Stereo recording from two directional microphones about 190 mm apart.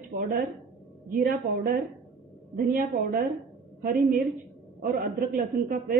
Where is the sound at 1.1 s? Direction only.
50° right (ahead or behind).